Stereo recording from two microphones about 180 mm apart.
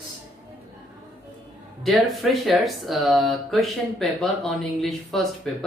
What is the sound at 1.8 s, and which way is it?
Speech, centre (ahead or behind).